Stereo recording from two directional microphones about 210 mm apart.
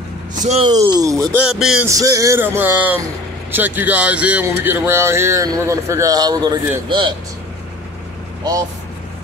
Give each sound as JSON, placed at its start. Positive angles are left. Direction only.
{"t": 0.3, "sound": "speech", "side_deg": -35}
{"t": 0.7, "sound": "speech", "side_deg": -15}
{"t": 1.9, "sound": "speech", "side_deg": -15}